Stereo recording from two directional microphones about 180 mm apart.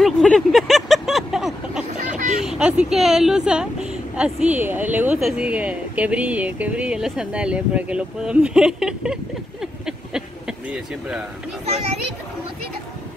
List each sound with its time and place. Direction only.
0.0 s vehicle: centre (ahead or behind)
2.0 s vehicle: 45° right (ahead or behind)
2.4 s speech: 5° right (ahead or behind)